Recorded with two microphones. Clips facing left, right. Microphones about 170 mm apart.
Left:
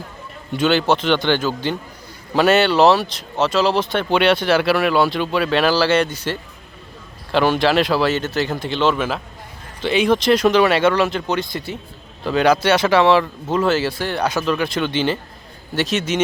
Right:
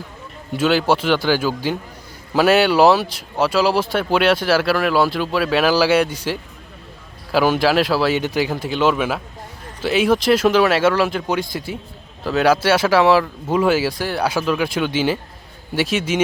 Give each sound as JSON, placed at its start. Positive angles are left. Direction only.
{"t": 0.5, "sound": "speech", "side_deg": -5}